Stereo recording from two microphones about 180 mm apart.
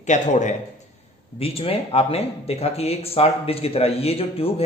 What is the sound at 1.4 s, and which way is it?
Speech, 30° left (ahead or behind).